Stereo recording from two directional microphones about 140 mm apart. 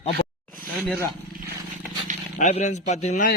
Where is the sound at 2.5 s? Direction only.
55° left (ahead or behind).